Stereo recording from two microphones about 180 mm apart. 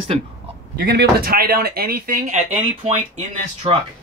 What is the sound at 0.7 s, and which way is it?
Speech, 55° right (ahead or behind).